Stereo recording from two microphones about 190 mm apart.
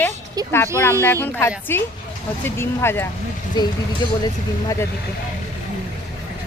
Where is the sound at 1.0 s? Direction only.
10° left (ahead or behind).